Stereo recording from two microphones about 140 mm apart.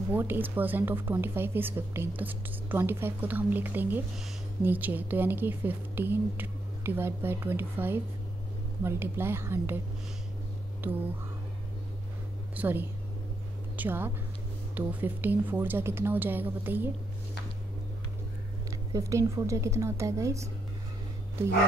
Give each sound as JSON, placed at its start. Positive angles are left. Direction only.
{"t": 0.1, "sound": "a woman's voice", "side_deg": -15}
{"t": 12.5, "sound": "a woman's voice", "side_deg": -15}
{"t": 18.7, "sound": "a woman's voice", "side_deg": -20}